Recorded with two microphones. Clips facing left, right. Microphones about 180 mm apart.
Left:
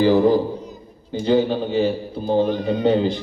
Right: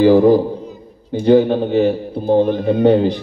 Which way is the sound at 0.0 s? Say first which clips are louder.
Right 5 dB; 55° right (ahead or behind).